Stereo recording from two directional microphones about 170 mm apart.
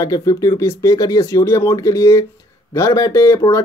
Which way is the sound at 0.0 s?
20° left (ahead or behind).